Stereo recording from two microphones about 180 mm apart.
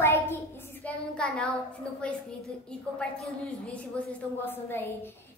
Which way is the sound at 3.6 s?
10° left (ahead or behind).